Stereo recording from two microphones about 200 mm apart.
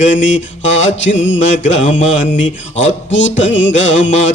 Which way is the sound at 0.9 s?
70° left (ahead or behind).